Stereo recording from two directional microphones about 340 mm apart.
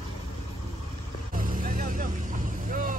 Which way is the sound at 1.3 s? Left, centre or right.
Right.